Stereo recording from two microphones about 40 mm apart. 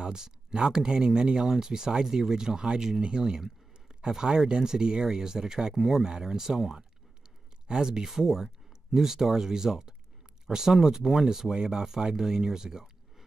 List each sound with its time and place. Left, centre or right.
0.0 s speech: centre